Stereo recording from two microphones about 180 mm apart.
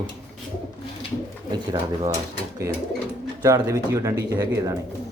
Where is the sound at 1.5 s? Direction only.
25° right (ahead or behind).